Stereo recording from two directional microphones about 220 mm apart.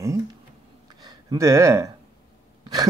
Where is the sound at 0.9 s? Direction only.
20° right (ahead or behind).